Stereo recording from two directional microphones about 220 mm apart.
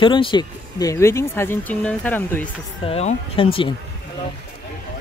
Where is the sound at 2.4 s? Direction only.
30° left (ahead or behind).